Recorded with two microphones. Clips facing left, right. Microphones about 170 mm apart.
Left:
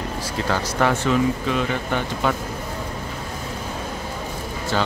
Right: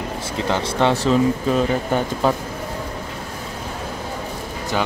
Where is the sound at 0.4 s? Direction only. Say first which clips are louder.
Right 2 dB; 20° right (ahead or behind).